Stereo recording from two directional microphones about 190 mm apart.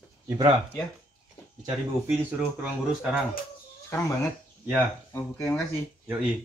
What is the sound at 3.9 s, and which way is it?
Speech, 15° left (ahead or behind).